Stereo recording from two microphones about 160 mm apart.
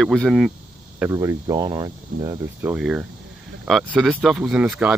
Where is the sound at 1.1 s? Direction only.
20° right (ahead or behind).